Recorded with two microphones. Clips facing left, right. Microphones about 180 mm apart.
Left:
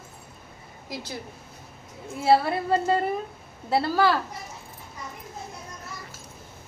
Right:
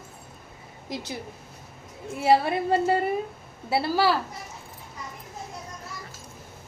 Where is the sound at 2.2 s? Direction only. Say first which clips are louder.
Even; 15° right (ahead or behind).